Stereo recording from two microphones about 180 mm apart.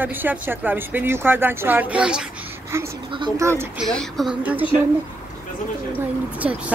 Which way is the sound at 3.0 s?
25° right (ahead or behind).